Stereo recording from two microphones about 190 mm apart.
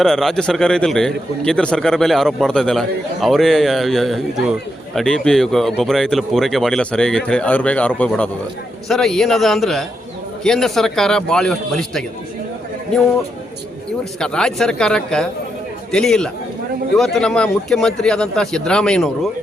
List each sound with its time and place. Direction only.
0.0 s a man's voice: centre (ahead or behind)
14.2 s a man's voice: 5° left (ahead or behind)